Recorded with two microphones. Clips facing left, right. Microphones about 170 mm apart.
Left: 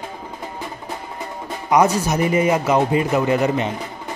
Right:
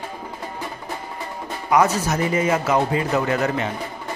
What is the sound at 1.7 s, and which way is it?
Speech, 15° left (ahead or behind).